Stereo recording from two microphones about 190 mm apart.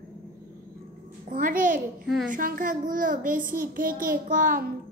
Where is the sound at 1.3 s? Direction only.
45° right (ahead or behind).